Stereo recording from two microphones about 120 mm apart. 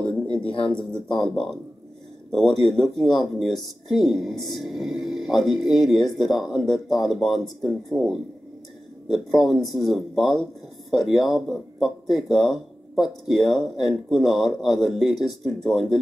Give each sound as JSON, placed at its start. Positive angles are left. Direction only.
{"t": 0.6, "sound": "speech", "side_deg": 10}
{"t": 2.4, "sound": "speech", "side_deg": 40}
{"t": 2.7, "sound": "speech", "side_deg": 5}